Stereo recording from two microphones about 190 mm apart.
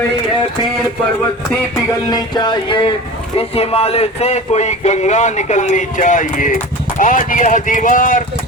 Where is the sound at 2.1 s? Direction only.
25° left (ahead or behind).